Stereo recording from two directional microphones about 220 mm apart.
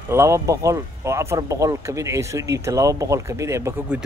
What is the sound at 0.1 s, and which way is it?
Speech, 10° right (ahead or behind).